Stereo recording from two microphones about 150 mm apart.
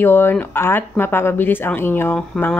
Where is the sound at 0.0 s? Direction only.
15° left (ahead or behind).